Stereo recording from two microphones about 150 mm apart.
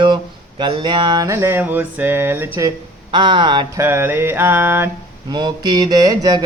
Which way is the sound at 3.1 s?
30° right (ahead or behind).